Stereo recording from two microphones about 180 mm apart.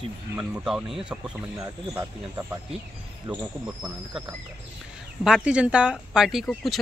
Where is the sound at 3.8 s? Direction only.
5° right (ahead or behind).